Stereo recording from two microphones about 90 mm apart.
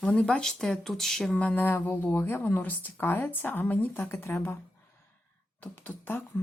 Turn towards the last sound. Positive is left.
turn(degrees=25)  # may be behind; listen again after turning